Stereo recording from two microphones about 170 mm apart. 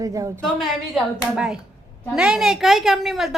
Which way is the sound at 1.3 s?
5° right (ahead or behind).